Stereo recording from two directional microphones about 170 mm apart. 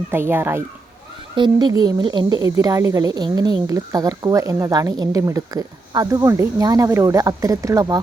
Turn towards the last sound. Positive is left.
turn(degrees=-20)  # may be behind; listen again after turning